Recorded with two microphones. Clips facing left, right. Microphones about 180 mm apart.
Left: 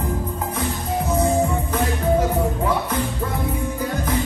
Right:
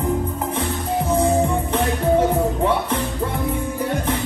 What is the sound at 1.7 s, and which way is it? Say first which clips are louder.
Music: right 2 dB; 30° right (ahead or behind).